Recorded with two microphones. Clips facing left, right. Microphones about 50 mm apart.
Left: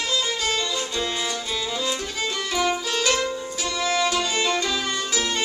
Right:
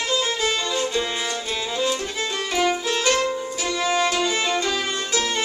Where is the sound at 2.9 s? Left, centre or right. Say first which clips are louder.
Right 2 dB; right.